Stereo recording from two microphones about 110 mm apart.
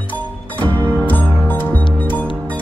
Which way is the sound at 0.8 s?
15° left (ahead or behind).